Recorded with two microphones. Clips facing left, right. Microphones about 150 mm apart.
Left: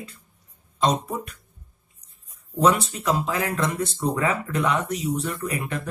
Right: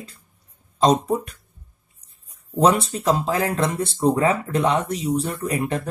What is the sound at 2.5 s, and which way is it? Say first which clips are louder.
Speech: right 2 dB; 35° right (ahead or behind).